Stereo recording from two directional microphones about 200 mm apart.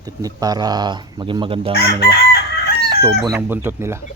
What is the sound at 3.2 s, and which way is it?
Speech, 15° right (ahead or behind).